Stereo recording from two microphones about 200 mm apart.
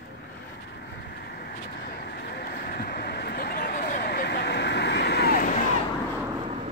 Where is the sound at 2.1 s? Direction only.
50° left (ahead or behind).